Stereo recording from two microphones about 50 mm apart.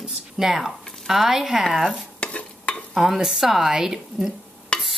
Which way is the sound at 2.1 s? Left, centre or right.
Left.